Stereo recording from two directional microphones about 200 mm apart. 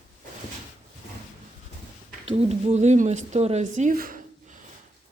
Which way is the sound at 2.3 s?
30° right (ahead or behind).